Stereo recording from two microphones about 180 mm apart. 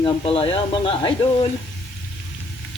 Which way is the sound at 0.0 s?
30° left (ahead or behind).